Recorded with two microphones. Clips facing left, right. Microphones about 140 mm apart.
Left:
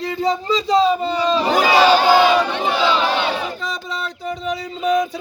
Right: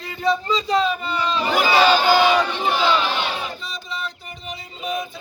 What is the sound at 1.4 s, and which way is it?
Speech, 40° left (ahead or behind).